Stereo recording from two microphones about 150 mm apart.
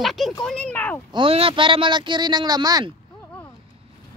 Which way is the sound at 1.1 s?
35° right (ahead or behind).